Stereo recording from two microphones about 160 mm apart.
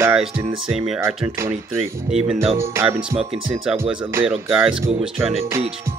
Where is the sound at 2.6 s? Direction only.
15° right (ahead or behind).